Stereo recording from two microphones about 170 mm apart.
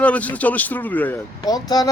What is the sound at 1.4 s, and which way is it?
Speech, 20° left (ahead or behind).